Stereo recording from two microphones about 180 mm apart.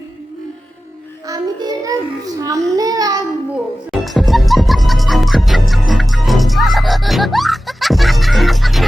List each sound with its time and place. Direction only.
1.3 s a child's voice: 20° right (ahead or behind)
3.5 s music: centre (ahead or behind)